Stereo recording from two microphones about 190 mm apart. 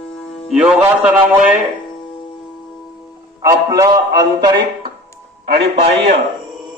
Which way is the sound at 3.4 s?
15° right (ahead or behind).